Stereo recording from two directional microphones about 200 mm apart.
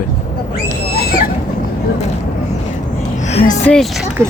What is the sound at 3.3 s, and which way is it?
Speech, 30° left (ahead or behind).